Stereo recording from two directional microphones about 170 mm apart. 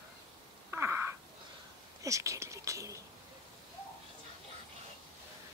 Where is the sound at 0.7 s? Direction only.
15° right (ahead or behind).